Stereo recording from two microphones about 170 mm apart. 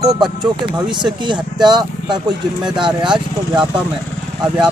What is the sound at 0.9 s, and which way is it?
Speech, 25° right (ahead or behind).